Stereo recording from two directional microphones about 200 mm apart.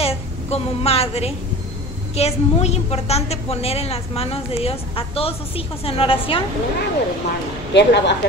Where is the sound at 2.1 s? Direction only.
30° left (ahead or behind).